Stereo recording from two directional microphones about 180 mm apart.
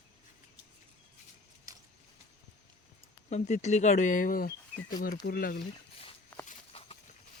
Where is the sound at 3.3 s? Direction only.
40° left (ahead or behind).